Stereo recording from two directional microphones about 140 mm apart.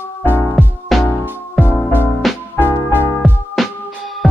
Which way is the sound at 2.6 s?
15° left (ahead or behind).